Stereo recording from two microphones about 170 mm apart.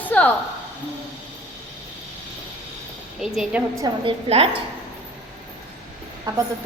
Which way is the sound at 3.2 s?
5° right (ahead or behind).